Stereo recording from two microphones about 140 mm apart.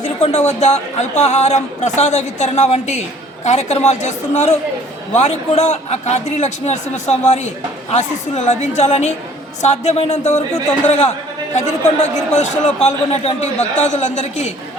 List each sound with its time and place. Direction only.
0.2 s a man's voice: 50° left (ahead or behind)